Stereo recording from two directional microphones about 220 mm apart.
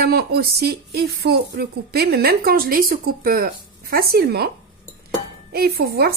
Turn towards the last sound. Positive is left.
turn(degrees=-45)  # may be behind; listen again after turning